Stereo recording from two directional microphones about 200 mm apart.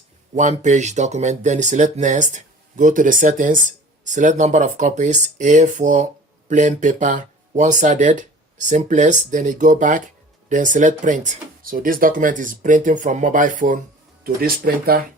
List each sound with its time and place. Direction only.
0.3 s speech: 35° right (ahead or behind)